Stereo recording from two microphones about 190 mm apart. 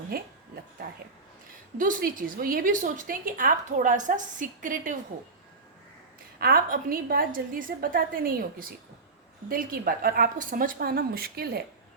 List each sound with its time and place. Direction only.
0.1 s a woman's voice: 55° right (ahead or behind)
1.8 s a woman's voice: 45° right (ahead or behind)
6.4 s a woman's voice: 50° right (ahead or behind)